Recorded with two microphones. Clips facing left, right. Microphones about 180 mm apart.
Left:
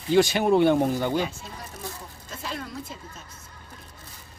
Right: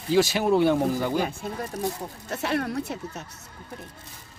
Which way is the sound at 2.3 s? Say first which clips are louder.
Right 8 dB; 70° right (ahead or behind).